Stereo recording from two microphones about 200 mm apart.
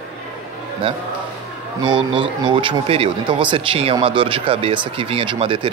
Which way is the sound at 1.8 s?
25° right (ahead or behind).